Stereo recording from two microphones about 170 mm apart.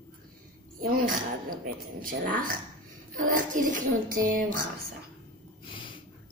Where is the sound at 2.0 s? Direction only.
55° right (ahead or behind).